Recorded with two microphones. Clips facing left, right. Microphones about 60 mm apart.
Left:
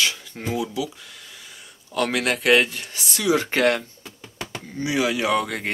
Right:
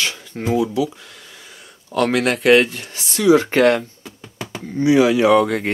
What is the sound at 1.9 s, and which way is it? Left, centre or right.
Speech, right.